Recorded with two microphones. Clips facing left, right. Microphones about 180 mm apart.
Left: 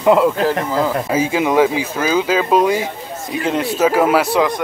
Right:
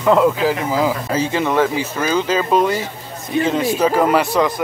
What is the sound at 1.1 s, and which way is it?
Speech, 10° left (ahead or behind).